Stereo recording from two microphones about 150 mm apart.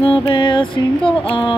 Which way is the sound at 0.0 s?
35° left (ahead or behind).